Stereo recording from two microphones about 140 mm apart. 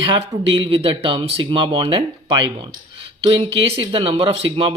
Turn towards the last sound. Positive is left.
turn(degrees=-40)  # may be behind; listen again after turning